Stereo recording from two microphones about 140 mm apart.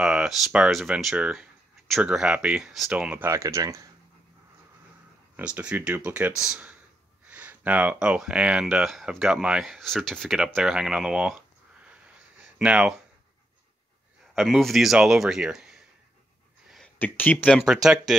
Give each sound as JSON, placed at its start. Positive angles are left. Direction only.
{"t": 0.0, "sound": "speech", "side_deg": -5}
{"t": 3.3, "sound": "speech", "side_deg": -20}
{"t": 5.3, "sound": "speech", "side_deg": -10}
{"t": 14.3, "sound": "speech", "side_deg": 0}
{"t": 16.7, "sound": "speech", "side_deg": 10}